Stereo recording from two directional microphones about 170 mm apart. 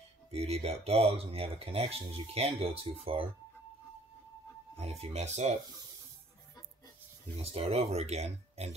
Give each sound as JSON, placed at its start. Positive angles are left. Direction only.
{"t": 0.3, "sound": "speech", "side_deg": -35}
{"t": 4.7, "sound": "speech", "side_deg": -35}
{"t": 7.5, "sound": "speech", "side_deg": -35}